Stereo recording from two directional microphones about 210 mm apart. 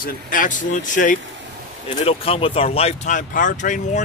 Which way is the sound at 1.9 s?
25° left (ahead or behind).